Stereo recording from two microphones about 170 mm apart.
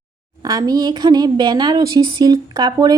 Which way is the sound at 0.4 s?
20° right (ahead or behind).